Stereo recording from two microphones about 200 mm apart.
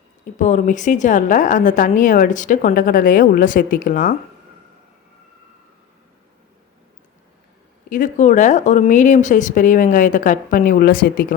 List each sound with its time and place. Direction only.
0.3 s a woman's voice: 40° left (ahead or behind)
7.9 s a woman's voice: 40° left (ahead or behind)